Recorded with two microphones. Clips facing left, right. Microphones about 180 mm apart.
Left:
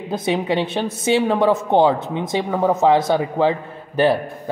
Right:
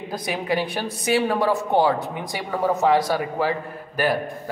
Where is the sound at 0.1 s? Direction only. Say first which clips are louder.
Left 5 dB; 25° left (ahead or behind).